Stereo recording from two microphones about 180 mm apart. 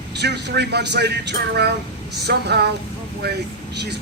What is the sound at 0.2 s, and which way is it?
Speech, 70° right (ahead or behind).